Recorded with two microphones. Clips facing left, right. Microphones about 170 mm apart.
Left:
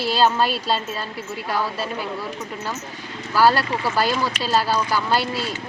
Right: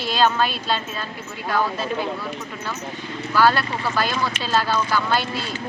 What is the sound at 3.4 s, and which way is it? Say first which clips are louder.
Speech: left 2 dB; 40° left (ahead or behind).